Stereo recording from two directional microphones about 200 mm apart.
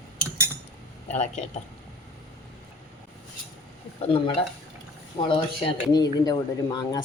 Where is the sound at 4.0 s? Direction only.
25° left (ahead or behind).